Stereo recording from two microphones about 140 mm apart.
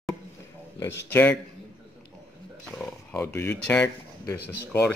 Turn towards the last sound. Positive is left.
turn(degrees=20)  # may be behind; listen again after turning